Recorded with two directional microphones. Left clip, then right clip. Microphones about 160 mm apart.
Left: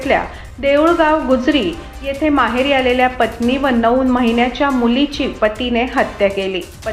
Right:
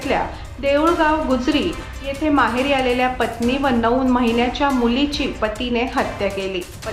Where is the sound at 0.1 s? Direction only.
15° left (ahead or behind).